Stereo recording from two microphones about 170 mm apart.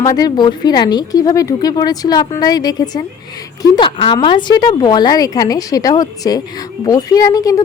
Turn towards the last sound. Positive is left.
turn(degrees=20)  # may be behind; listen again after turning